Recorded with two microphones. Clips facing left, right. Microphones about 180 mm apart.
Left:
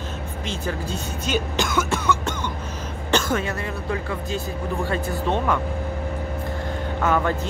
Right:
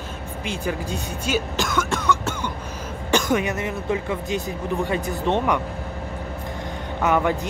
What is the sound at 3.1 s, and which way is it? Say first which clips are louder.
Speech: right 2 dB; 15° right (ahead or behind).